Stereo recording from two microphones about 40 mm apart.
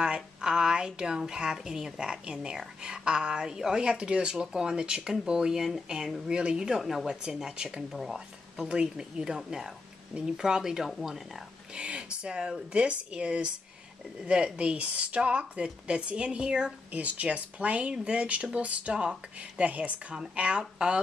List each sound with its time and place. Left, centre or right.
0.0 s a woman's voice: centre
2.8 s a woman's voice: right
6.8 s a woman's voice: centre
7.9 s speech: centre
8.5 s a woman's voice: centre
11.7 s speech: right
16.9 s speech: right